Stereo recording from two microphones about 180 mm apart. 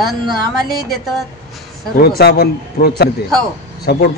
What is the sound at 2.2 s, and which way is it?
Speech, 60° left (ahead or behind).